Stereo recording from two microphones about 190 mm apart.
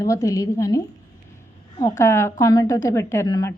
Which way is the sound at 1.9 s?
15° left (ahead or behind).